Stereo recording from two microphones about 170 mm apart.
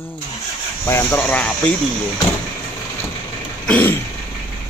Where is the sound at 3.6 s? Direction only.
10° left (ahead or behind).